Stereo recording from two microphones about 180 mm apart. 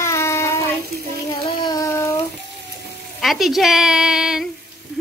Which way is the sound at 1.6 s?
20° left (ahead or behind).